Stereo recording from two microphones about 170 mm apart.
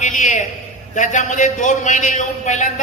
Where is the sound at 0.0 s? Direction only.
45° left (ahead or behind).